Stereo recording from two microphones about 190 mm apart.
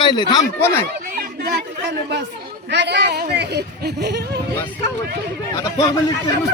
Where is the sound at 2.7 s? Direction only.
65° right (ahead or behind).